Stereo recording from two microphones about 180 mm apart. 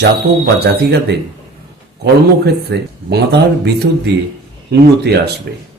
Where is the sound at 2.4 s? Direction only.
65° right (ahead or behind).